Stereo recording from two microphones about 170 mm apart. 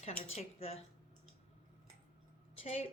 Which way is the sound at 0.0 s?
35° left (ahead or behind).